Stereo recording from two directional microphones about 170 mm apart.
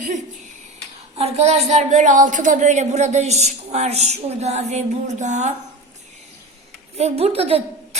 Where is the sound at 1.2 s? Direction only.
40° right (ahead or behind).